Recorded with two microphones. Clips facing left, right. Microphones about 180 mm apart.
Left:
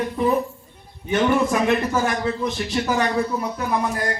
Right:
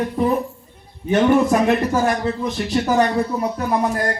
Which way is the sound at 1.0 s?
40° right (ahead or behind).